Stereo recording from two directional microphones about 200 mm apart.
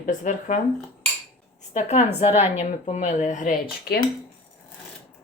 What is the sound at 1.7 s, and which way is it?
Speech, 35° left (ahead or behind).